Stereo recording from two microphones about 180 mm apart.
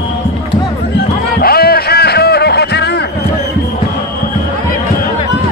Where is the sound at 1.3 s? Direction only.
60° left (ahead or behind).